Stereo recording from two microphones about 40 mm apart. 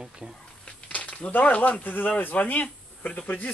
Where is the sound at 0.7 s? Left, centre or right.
Left.